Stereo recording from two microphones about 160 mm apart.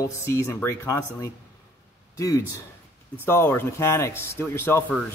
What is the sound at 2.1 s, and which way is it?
A man's voice, 20° left (ahead or behind).